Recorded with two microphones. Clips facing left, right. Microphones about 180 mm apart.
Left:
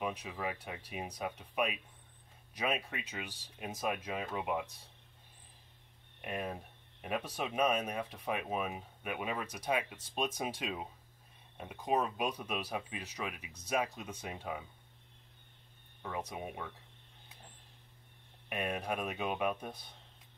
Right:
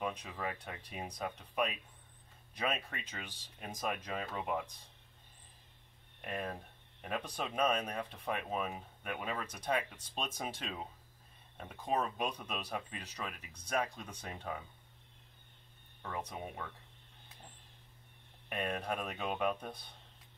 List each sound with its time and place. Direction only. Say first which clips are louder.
0.0 s speech: left 1 dB; 10° left (ahead or behind)
6.2 s speech: left 1 dB; 10° left (ahead or behind)
16.0 s speech: left 1 dB; 10° left (ahead or behind)
18.5 s speech: left 1 dB; 10° left (ahead or behind)